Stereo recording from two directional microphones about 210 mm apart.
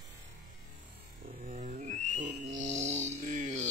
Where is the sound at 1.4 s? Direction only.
35° right (ahead or behind).